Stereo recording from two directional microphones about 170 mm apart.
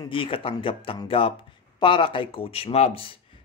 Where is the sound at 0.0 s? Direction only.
30° left (ahead or behind).